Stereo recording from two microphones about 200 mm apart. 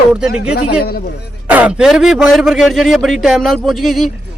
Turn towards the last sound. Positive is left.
turn(degrees=0)  # may be behind; listen again after turning